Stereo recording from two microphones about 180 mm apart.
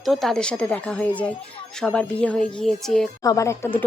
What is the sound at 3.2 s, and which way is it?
Speech, 15° left (ahead or behind).